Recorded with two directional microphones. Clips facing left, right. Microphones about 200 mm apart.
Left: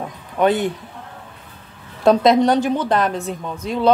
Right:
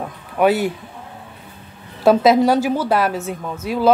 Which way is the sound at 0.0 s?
5° right (ahead or behind).